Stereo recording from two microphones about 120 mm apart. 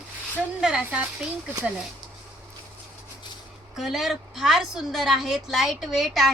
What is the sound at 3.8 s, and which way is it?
A woman's voice, centre (ahead or behind).